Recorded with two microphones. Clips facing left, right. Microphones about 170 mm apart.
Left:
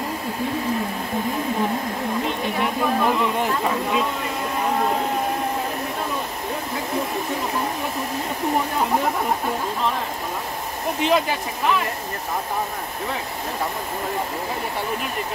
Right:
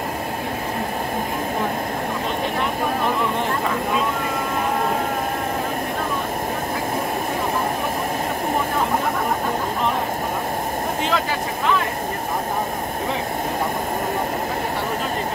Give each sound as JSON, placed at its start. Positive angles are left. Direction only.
{"t": 11.0, "sound": "speech", "side_deg": 20}